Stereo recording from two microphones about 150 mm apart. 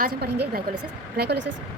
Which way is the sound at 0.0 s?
85° right.